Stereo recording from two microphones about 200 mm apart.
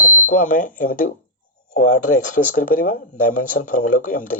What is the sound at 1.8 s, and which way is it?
Speech, 90° left.